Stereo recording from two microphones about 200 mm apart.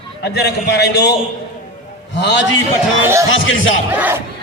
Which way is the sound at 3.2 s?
75° left (ahead or behind).